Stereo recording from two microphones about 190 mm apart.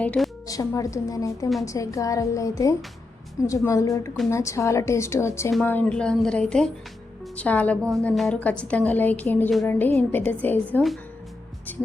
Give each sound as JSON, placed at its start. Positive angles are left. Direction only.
{"t": 0.0, "sound": "speech", "side_deg": 5}
{"t": 0.4, "sound": "a woman's voice", "side_deg": 20}